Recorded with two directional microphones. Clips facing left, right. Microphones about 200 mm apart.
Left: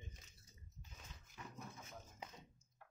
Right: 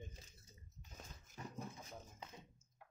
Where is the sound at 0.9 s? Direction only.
35° right (ahead or behind).